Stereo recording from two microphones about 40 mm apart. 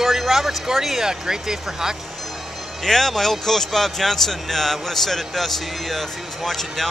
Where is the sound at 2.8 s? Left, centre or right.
Centre.